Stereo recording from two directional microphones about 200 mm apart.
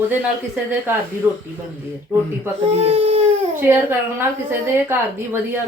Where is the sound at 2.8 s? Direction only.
30° right (ahead or behind).